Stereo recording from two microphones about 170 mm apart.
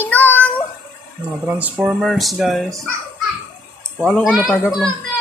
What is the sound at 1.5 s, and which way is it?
A child's voice, 10° right (ahead or behind).